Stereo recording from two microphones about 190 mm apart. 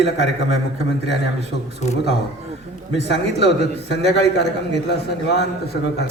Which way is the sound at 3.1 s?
60° left (ahead or behind).